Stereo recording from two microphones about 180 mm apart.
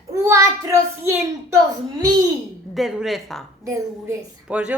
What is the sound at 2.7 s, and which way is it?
Speech, centre (ahead or behind).